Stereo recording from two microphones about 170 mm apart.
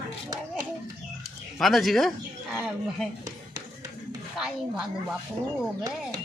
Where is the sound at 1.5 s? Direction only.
Centre (ahead or behind).